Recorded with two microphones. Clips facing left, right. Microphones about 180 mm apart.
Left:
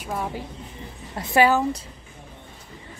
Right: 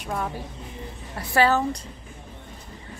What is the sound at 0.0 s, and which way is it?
Speech, 5° left (ahead or behind).